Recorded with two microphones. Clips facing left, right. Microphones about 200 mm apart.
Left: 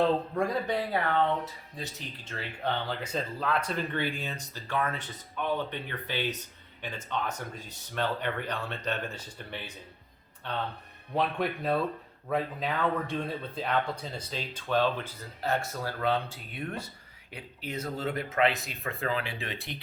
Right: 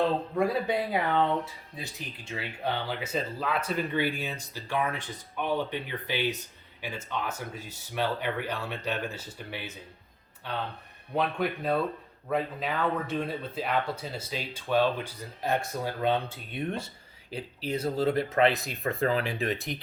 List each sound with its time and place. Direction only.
0.3 s speech: 10° right (ahead or behind); by 19.7 s 45° right (ahead or behind)